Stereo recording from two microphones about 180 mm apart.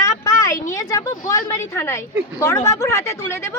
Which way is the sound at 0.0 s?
20° left (ahead or behind).